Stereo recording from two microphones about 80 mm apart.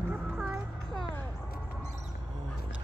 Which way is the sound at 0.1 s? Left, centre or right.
Centre.